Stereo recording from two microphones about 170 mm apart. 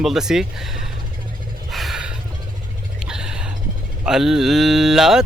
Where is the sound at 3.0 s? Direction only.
5° right (ahead or behind).